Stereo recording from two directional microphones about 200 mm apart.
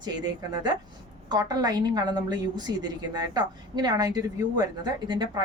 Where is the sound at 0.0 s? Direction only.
20° right (ahead or behind).